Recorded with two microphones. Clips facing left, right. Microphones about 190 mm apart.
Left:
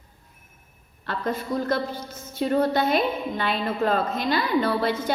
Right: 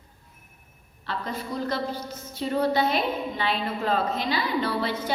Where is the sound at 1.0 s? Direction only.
50° left (ahead or behind).